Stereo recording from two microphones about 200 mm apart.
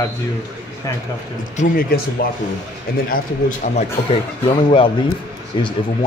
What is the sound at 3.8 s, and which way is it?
Speech, 30° left (ahead or behind).